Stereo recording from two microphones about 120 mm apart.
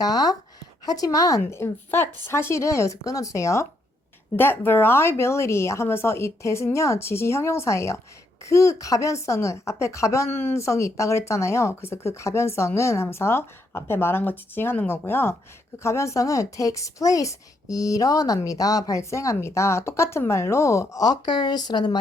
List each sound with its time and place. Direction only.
0.0 s speech: 35° left (ahead or behind)